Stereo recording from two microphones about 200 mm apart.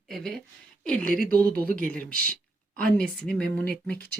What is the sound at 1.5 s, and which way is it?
Speech, 45° right (ahead or behind).